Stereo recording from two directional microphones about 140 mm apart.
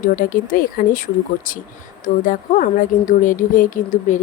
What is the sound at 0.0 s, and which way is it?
A woman's voice, 70° left (ahead or behind).